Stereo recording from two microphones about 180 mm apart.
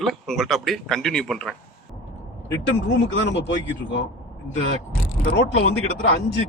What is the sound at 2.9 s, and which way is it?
Speech, 75° left (ahead or behind).